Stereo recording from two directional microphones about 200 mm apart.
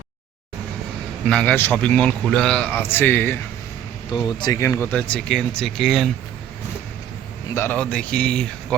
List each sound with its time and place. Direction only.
1.3 s a man's voice: 5° left (ahead or behind)
7.5 s a man's voice: 10° left (ahead or behind)